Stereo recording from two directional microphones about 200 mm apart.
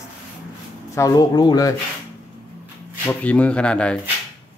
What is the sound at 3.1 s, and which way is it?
Speech, 5° left (ahead or behind).